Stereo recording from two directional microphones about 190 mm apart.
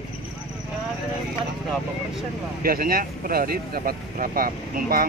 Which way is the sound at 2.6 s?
50° right (ahead or behind).